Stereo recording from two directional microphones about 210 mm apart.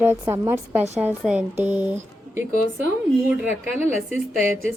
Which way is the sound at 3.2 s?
10° right (ahead or behind).